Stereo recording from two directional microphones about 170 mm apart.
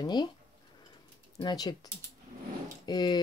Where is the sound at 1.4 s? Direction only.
25° left (ahead or behind).